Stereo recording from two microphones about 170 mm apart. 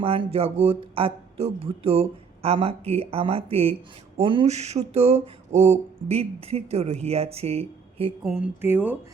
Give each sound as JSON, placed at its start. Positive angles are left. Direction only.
{"t": 0.0, "sound": "speech", "side_deg": -35}
{"t": 8.6, "sound": "speech", "side_deg": -10}